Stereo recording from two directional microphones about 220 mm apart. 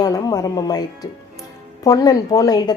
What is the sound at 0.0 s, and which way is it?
A woman's voice, 15° left (ahead or behind).